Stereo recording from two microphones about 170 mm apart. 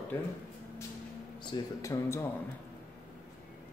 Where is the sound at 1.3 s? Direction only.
25° left (ahead or behind).